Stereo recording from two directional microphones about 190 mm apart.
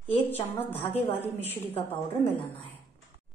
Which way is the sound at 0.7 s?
10° left (ahead or behind).